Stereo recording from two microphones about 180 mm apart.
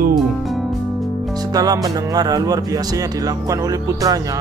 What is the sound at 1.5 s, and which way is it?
Music, 20° right (ahead or behind).